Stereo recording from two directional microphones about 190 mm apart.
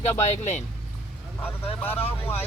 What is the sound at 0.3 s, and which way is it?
Speech, 35° left (ahead or behind).